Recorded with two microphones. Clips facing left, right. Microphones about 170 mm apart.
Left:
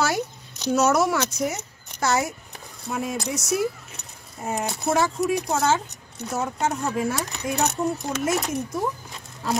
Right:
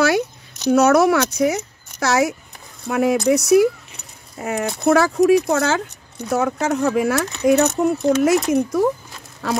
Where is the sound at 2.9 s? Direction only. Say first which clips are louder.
Right 11 dB; 70° right (ahead or behind).